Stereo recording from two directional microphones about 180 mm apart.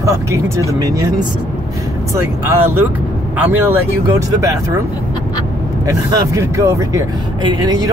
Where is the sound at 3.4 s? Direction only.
10° right (ahead or behind).